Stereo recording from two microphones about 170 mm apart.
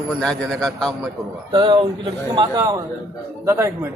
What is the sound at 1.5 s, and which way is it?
A man's voice, 30° right (ahead or behind).